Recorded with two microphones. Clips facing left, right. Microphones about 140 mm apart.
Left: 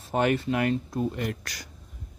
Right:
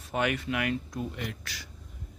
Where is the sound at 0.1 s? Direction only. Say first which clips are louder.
Left 5 dB; 35° left (ahead or behind).